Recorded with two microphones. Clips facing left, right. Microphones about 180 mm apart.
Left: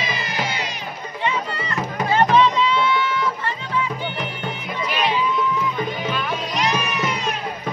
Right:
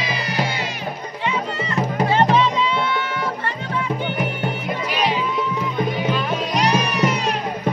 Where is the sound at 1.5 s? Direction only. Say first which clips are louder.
Right 4 dB; 25° right (ahead or behind).